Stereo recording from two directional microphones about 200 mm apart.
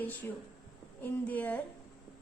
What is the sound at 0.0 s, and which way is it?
A woman's voice, 10° left (ahead or behind).